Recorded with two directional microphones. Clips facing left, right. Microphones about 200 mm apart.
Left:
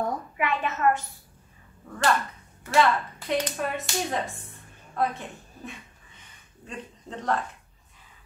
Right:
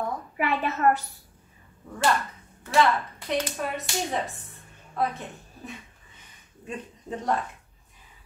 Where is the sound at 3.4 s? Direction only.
Centre (ahead or behind).